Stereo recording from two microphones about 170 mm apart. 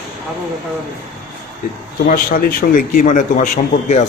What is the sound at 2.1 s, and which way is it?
A man's voice, 60° left (ahead or behind).